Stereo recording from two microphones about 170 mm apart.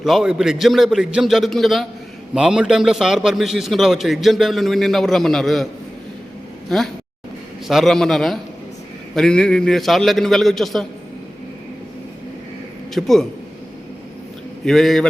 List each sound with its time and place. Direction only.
0.0 s a man's voice: centre (ahead or behind)
6.7 s a man's voice: centre (ahead or behind)
12.9 s a man's voice: centre (ahead or behind)
14.6 s a man's voice: centre (ahead or behind)